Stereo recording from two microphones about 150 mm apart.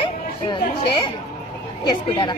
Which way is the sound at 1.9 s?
30° left (ahead or behind).